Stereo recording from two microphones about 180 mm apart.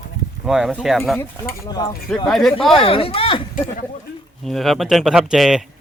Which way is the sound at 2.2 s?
Centre (ahead or behind).